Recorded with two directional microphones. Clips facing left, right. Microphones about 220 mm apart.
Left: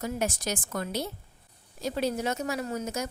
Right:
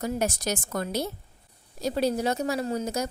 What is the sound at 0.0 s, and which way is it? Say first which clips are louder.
A woman's voice: right 3 dB; 40° right (ahead or behind).